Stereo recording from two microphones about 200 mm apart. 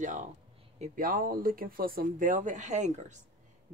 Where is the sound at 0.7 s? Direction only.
45° right (ahead or behind).